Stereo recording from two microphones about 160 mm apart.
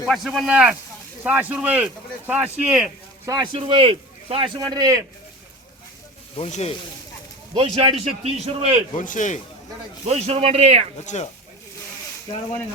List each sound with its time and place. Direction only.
0.0 s speech: centre (ahead or behind)
3.2 s speech: 30° right (ahead or behind)
6.3 s speech: 40° left (ahead or behind)
7.5 s a man's voice: 35° right (ahead or behind)
9.0 s a man's voice: 55° left (ahead or behind)
10.1 s a man's voice: 40° right (ahead or behind)
10.9 s a man's voice: 45° left (ahead or behind)